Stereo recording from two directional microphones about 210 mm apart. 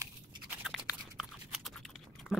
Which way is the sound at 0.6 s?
5° right (ahead or behind).